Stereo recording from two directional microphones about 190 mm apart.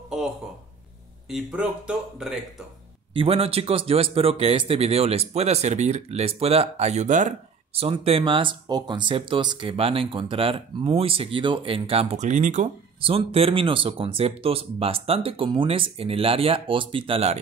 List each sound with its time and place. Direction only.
1.3 s speech: 5° right (ahead or behind)
3.1 s speech: 30° right (ahead or behind)